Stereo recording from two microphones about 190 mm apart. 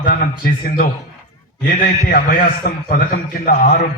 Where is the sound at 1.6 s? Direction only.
50° left (ahead or behind).